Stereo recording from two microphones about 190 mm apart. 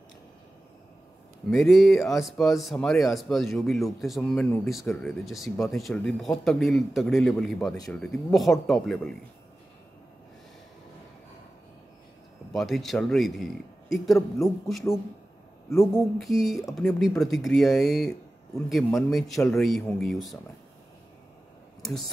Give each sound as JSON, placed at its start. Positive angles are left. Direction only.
{"t": 1.5, "sound": "speech", "side_deg": 0}
{"t": 12.5, "sound": "speech", "side_deg": 0}